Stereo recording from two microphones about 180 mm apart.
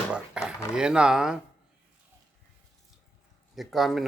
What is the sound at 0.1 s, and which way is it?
Speech, 5° right (ahead or behind).